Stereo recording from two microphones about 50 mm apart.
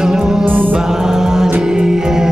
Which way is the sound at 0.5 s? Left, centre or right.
Right.